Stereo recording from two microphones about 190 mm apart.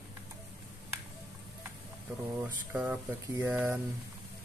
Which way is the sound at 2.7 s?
10° right (ahead or behind).